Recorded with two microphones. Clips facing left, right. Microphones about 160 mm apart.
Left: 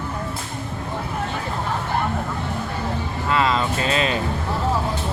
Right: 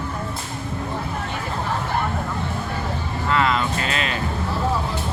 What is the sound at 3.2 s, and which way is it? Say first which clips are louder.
Speech: even; 20° left (ahead or behind).